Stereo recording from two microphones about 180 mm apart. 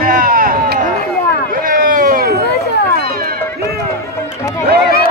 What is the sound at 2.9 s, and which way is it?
Music, 55° right (ahead or behind).